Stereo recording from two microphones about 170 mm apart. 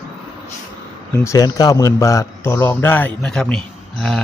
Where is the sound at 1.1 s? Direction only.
15° left (ahead or behind).